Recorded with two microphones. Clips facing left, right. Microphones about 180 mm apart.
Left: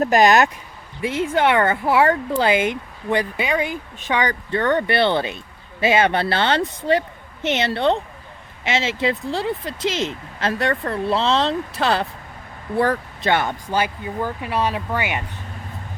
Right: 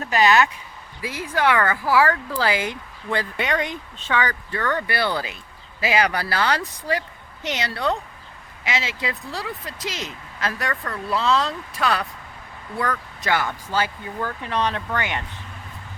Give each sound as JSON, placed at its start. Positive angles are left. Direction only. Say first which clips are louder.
{"t": 0.0, "sound": "speech", "louder": "left 4 dB", "side_deg": 45}
{"t": 1.0, "sound": "speech", "louder": "left 4 dB", "side_deg": 25}
{"t": 3.3, "sound": "speech", "louder": "left 2 dB", "side_deg": 5}